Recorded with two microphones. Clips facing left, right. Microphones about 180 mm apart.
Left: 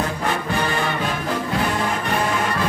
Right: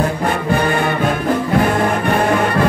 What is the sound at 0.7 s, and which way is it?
Music, 55° right (ahead or behind).